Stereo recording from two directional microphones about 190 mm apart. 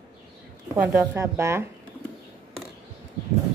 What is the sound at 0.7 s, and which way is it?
Speech, 10° right (ahead or behind).